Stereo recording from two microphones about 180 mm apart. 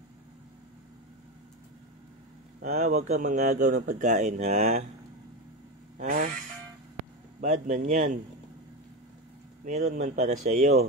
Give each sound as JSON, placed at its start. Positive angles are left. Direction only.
{"t": 2.6, "sound": "speech", "side_deg": -45}
{"t": 5.9, "sound": "speech", "side_deg": -45}
{"t": 7.3, "sound": "speech", "side_deg": -45}
{"t": 9.7, "sound": "speech", "side_deg": -40}